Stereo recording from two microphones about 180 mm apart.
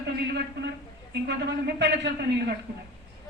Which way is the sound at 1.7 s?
75° right (ahead or behind).